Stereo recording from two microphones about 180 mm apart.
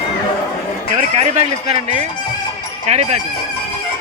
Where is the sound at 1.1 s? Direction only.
35° right (ahead or behind).